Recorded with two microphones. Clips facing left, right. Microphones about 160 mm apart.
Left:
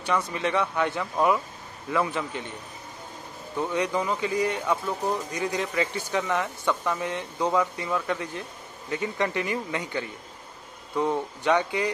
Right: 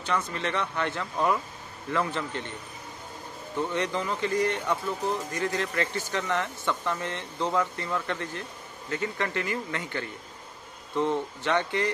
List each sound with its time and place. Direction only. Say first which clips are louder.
0.0 s speech: left 3 dB; 15° left (ahead or behind)
3.7 s speech: left 6 dB; 10° left (ahead or behind)